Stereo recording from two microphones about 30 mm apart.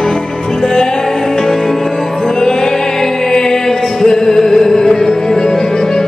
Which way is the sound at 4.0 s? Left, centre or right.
Centre.